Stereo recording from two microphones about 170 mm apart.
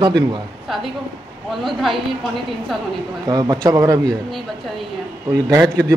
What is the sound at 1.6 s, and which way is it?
Speech, centre (ahead or behind).